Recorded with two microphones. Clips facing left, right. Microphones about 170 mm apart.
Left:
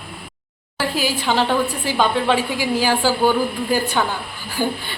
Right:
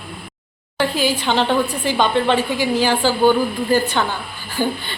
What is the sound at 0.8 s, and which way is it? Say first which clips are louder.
A woman's voice: right 3 dB; 5° left (ahead or behind).